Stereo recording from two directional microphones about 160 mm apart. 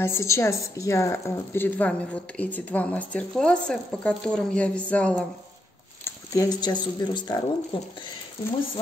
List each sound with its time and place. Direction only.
0.0 s speech: 15° left (ahead or behind)
6.0 s speech: 20° left (ahead or behind)